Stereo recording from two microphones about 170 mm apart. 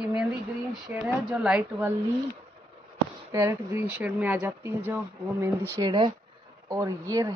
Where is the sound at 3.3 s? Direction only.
15° right (ahead or behind).